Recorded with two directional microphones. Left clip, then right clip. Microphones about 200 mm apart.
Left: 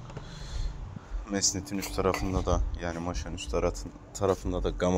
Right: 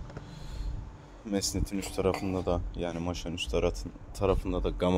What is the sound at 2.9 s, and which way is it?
Speech, 20° right (ahead or behind).